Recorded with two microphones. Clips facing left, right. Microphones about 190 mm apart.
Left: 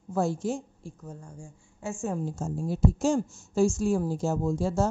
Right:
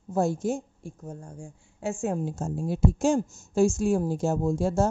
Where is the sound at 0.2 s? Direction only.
45° right (ahead or behind).